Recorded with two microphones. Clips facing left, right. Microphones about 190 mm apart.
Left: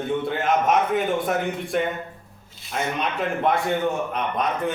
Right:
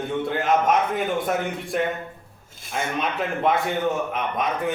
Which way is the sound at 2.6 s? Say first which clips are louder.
Even; 50° right (ahead or behind).